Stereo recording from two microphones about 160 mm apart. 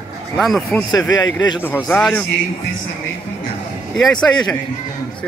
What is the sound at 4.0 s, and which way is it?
Speech, 5° left (ahead or behind).